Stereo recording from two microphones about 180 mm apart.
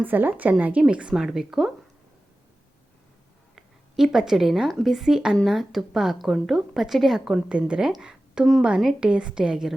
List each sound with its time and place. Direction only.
0.0 s speech: 10° right (ahead or behind)
3.5 s speech: centre (ahead or behind)